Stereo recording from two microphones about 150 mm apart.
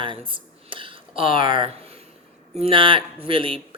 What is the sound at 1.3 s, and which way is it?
Speech, 65° left (ahead or behind).